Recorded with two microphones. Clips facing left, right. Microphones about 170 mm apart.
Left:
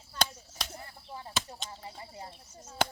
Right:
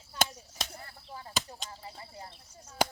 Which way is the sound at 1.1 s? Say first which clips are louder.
Even; 20° left (ahead or behind).